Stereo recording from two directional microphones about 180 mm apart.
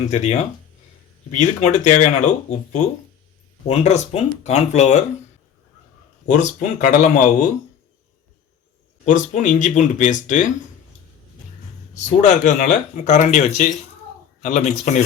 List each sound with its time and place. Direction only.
0.1 s speech: 40° left (ahead or behind)
6.3 s speech: 40° left (ahead or behind)
9.0 s speech: 45° left (ahead or behind)
11.9 s speech: 40° left (ahead or behind)